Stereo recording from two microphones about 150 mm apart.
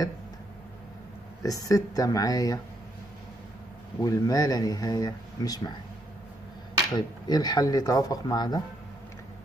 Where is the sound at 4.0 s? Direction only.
25° left (ahead or behind).